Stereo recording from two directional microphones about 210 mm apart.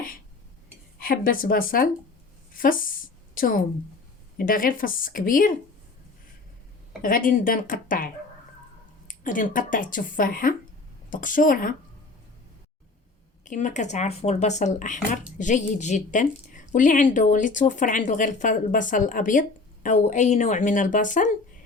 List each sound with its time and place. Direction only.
0.9 s speech: 45° left (ahead or behind)
2.5 s a sound: 40° left (ahead or behind)
4.4 s a woman's voice: 40° left (ahead or behind)
7.0 s a woman's voice: 40° left (ahead or behind)
13.4 s a woman's voice: 35° left (ahead or behind)